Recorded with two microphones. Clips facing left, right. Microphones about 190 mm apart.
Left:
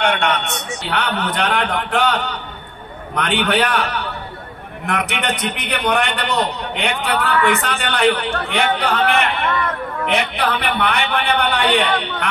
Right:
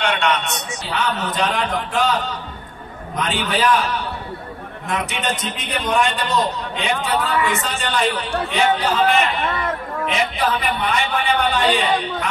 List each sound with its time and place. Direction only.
0.0 s a man's voice: 60° left (ahead or behind)